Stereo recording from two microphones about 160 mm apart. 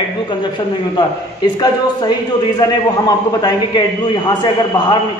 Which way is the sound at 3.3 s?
25° left (ahead or behind).